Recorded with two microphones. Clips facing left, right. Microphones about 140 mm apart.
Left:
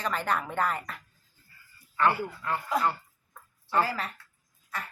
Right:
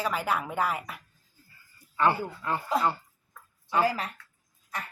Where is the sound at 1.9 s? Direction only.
20° right (ahead or behind).